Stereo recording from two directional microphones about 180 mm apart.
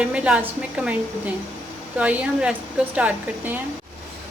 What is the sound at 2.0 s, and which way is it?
A woman's voice, 5° right (ahead or behind).